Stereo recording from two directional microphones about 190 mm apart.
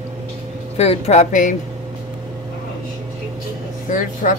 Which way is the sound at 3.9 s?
45° left (ahead or behind).